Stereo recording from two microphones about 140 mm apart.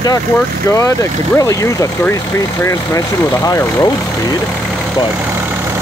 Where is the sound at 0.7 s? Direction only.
25° left (ahead or behind).